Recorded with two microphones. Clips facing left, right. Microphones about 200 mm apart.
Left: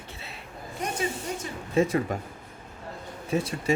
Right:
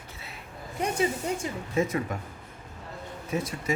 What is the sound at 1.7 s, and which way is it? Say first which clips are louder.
Speech: left 4 dB; 30° left (ahead or behind).